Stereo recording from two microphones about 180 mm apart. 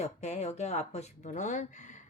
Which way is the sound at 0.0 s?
35° left (ahead or behind).